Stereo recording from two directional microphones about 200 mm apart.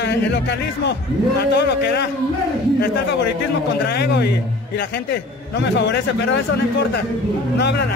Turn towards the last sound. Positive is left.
turn(degrees=55)  # may be behind; listen again after turning